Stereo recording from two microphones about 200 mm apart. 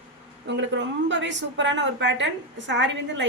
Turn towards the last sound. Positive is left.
turn(degrees=-65)  # may be behind; listen again after turning